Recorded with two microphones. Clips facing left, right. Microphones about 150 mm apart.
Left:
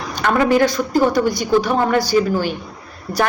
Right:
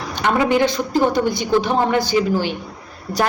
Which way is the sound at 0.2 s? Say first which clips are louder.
Left 2 dB; 20° right (ahead or behind).